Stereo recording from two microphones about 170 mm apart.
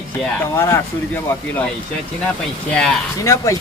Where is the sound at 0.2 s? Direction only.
15° left (ahead or behind).